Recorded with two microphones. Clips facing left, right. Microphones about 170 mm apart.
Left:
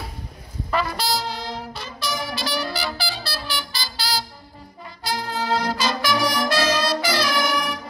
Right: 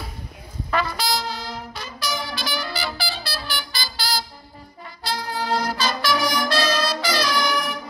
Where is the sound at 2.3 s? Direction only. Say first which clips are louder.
Left 2 dB; 30° left (ahead or behind).